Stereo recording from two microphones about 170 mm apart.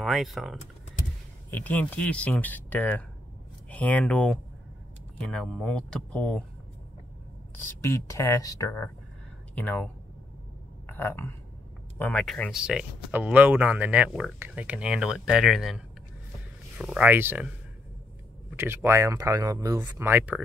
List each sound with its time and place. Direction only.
0.0 s speech: centre (ahead or behind)
7.8 s speech: 15° left (ahead or behind)
10.9 s speech: 10° left (ahead or behind); by 17.5 s 10° right (ahead or behind)
18.6 s speech: 15° right (ahead or behind)